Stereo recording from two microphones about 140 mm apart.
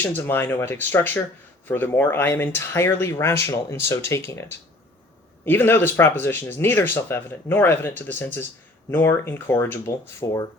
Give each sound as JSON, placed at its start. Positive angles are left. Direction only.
{"t": 0.0, "sound": "speech", "side_deg": 15}
{"t": 5.5, "sound": "speech", "side_deg": 15}